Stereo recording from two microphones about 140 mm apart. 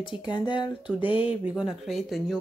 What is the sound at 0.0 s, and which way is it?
Speech, 35° left (ahead or behind).